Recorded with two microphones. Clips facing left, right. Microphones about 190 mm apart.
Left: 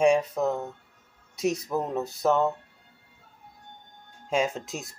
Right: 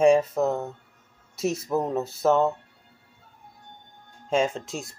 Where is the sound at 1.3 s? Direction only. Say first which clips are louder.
Even; 15° left (ahead or behind).